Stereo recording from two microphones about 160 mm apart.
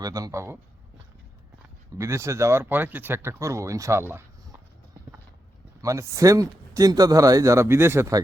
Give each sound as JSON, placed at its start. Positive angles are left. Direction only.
{"t": 0.0, "sound": "speech", "side_deg": -20}
{"t": 2.0, "sound": "speech", "side_deg": -15}
{"t": 5.8, "sound": "speech", "side_deg": -20}